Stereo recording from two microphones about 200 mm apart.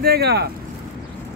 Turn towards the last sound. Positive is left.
turn(degrees=-55)  # may be behind; listen again after turning